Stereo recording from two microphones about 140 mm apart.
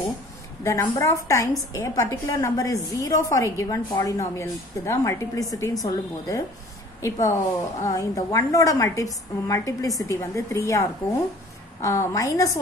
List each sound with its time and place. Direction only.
0.7 s a woman's voice: 20° left (ahead or behind)